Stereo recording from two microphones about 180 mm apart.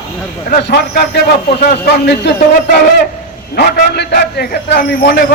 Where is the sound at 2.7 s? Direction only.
60° left (ahead or behind).